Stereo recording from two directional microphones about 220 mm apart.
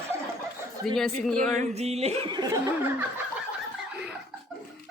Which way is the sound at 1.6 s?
30° right (ahead or behind).